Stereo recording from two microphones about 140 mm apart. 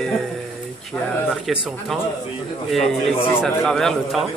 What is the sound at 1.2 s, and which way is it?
Speech, 5° right (ahead or behind).